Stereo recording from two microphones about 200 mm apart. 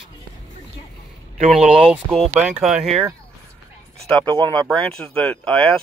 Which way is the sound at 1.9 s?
Centre (ahead or behind).